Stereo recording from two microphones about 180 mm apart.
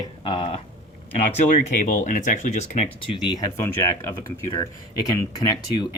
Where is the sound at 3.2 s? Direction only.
20° left (ahead or behind).